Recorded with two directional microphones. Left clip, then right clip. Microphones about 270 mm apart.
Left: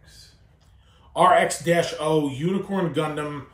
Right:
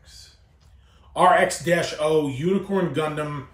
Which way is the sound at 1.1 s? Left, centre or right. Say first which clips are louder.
Even; centre.